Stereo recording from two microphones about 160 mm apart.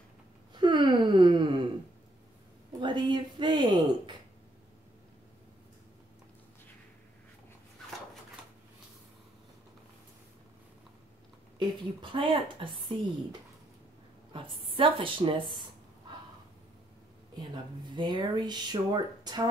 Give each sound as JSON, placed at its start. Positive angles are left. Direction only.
{"t": 0.6, "sound": "gasp", "side_deg": -30}
{"t": 2.8, "sound": "a sound", "side_deg": -30}
{"t": 12.0, "sound": "a woman's voice", "side_deg": -35}
{"t": 17.4, "sound": "speech", "side_deg": -30}